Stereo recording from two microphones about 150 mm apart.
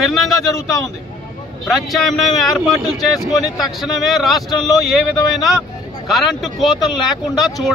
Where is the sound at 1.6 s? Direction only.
Centre (ahead or behind).